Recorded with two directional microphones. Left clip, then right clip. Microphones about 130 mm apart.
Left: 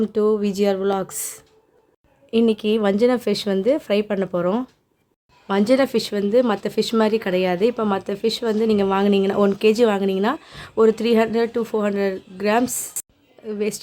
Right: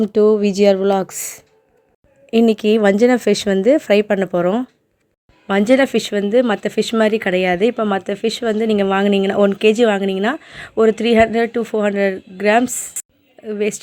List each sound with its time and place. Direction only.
0.0 s speech: 45° right (ahead or behind); by 13.7 s 25° right (ahead or behind)